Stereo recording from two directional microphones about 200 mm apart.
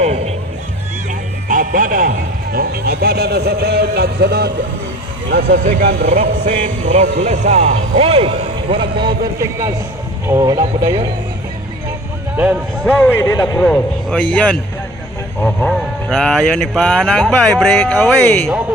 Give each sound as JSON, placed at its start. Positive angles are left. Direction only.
{"t": 0.0, "sound": "music", "side_deg": -35}
{"t": 1.5, "sound": "a sound", "side_deg": -40}
{"t": 5.3, "sound": "speech", "side_deg": -50}
{"t": 6.1, "sound": "speech", "side_deg": -35}
{"t": 12.8, "sound": "a man's voice", "side_deg": 5}